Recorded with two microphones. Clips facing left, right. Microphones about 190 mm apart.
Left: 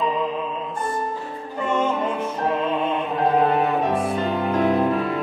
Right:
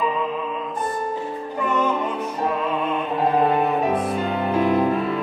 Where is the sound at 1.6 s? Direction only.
25° left (ahead or behind).